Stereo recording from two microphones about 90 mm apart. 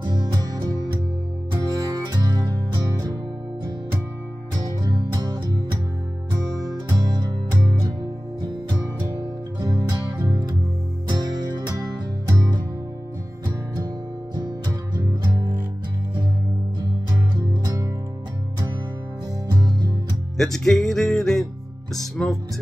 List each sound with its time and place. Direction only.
0.0 s music: 50° right (ahead or behind)
4.6 s music: 50° right (ahead or behind)
7.1 s music: 45° right (ahead or behind)
8.4 s music: 55° right (ahead or behind)
9.6 s music: 45° right (ahead or behind)
19.5 s music: 45° right (ahead or behind)
20.3 s music: 5° left (ahead or behind)